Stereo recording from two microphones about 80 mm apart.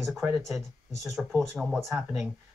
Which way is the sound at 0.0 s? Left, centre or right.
Centre.